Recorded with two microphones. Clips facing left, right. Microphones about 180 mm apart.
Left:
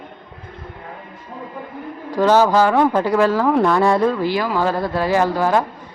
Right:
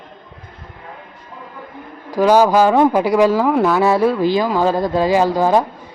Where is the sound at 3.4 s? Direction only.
Centre (ahead or behind).